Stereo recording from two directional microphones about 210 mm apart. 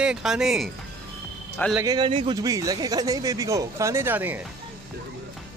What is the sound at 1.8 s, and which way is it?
Speech, 20° right (ahead or behind).